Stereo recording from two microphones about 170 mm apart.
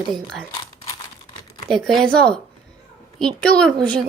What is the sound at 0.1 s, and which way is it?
Speech, centre (ahead or behind).